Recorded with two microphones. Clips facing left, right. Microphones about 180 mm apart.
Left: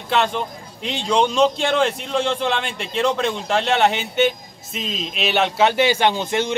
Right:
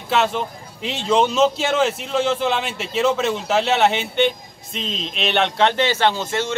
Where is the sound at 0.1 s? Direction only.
5° right (ahead or behind).